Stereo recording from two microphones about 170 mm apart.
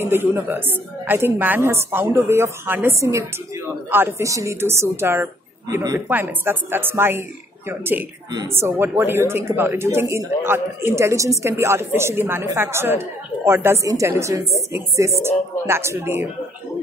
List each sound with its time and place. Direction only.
0.0 s a woman's voice: 15° right (ahead or behind)